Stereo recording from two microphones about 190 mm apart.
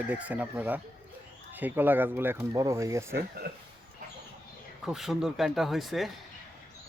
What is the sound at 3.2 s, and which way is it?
Speech, 55° right (ahead or behind).